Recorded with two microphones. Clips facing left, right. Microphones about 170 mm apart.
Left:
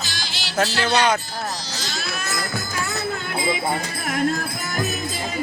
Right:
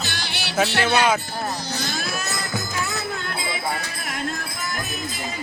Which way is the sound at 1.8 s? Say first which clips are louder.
Right 3 dB; 55° right (ahead or behind).